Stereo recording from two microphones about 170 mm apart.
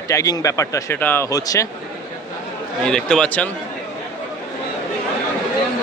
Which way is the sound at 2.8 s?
5° left (ahead or behind).